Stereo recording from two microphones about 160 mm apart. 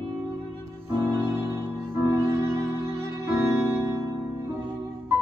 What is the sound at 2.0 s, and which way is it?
Music, 20° right (ahead or behind).